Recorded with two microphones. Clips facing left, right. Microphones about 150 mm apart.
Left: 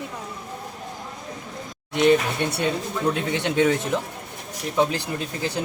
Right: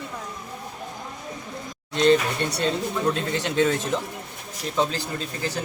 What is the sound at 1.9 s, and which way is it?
Speech, 15° left (ahead or behind).